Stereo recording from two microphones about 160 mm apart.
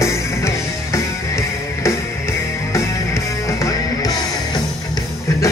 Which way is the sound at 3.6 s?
20° left (ahead or behind).